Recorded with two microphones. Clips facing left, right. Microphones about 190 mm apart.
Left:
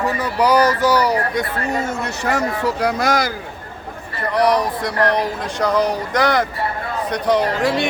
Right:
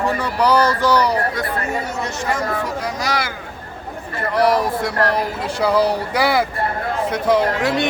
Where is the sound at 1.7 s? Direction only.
45° left (ahead or behind).